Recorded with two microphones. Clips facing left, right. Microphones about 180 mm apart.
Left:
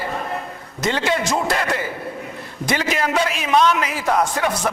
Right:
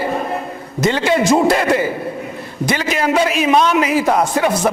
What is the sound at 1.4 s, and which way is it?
A man's voice, 10° right (ahead or behind).